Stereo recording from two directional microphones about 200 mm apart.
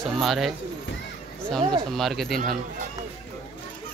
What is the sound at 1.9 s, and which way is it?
Speech, centre (ahead or behind).